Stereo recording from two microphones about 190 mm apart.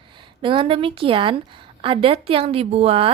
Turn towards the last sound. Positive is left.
turn(degrees=-30)  # may be behind; listen again after turning